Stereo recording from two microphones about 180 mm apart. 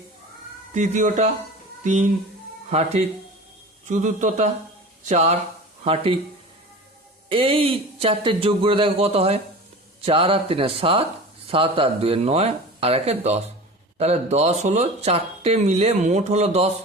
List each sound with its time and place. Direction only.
0.7 s a man's voice: 40° right (ahead or behind)
7.3 s speech: 30° right (ahead or behind)